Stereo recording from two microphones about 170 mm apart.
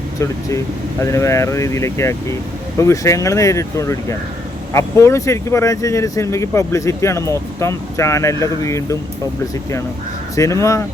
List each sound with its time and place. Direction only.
0.2 s speech: 15° left (ahead or behind)
10.3 s speech: 15° left (ahead or behind)